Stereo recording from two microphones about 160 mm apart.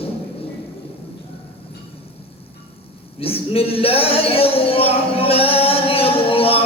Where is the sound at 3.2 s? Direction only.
35° left (ahead or behind).